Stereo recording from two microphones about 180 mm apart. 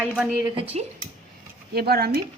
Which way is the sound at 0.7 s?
40° right (ahead or behind).